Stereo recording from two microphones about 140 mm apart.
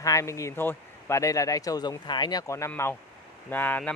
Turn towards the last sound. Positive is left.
turn(degrees=10)  # may be behind; listen again after turning